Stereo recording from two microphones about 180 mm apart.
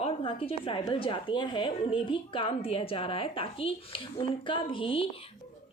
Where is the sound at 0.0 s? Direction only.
30° left (ahead or behind).